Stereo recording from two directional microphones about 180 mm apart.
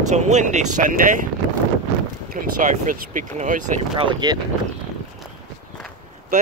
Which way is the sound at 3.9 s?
25° right (ahead or behind).